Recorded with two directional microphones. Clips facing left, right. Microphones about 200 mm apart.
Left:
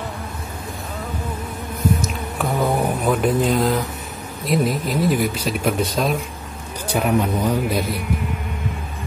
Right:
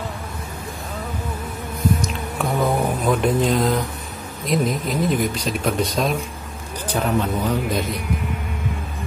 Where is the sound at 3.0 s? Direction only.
5° left (ahead or behind).